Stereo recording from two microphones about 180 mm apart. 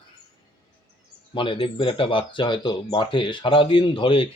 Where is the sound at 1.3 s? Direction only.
30° left (ahead or behind).